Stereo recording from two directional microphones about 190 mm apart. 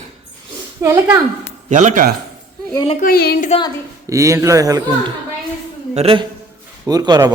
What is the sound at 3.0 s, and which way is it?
Speech, 55° left (ahead or behind).